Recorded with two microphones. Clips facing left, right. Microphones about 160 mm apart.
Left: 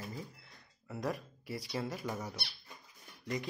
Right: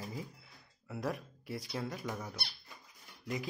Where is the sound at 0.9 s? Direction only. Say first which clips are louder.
Even; centre (ahead or behind).